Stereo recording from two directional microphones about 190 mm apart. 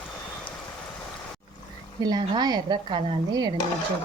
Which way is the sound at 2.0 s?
20° right (ahead or behind).